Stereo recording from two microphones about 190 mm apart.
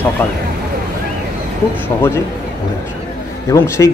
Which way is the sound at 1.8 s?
15° left (ahead or behind).